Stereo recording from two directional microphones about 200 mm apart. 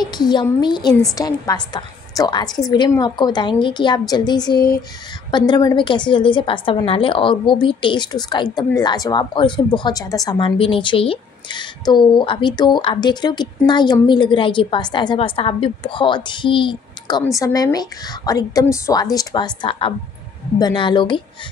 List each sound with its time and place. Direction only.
0.0 s a woman's voice: 20° left (ahead or behind)